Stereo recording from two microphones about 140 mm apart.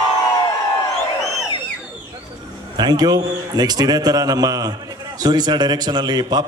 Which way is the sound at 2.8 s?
30° right (ahead or behind).